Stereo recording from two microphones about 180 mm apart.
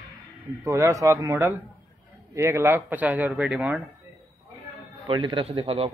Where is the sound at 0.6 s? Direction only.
15° right (ahead or behind).